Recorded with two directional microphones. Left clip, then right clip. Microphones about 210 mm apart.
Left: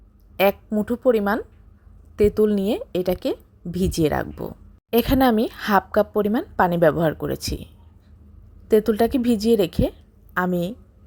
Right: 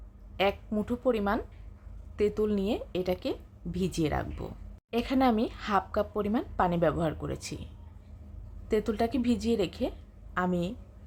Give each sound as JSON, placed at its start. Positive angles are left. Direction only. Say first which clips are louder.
{"t": 0.7, "sound": "speech", "louder": "left 9 dB", "side_deg": 20}